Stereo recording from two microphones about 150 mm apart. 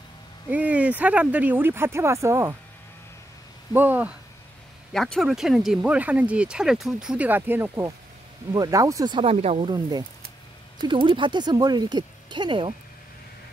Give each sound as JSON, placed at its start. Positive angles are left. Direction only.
{"t": 0.5, "sound": "speech", "side_deg": -10}
{"t": 3.7, "sound": "speech", "side_deg": -10}
{"t": 4.9, "sound": "speech", "side_deg": 5}
{"t": 9.7, "sound": "speech", "side_deg": -25}